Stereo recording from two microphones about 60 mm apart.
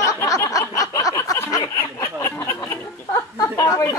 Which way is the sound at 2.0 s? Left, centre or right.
Left.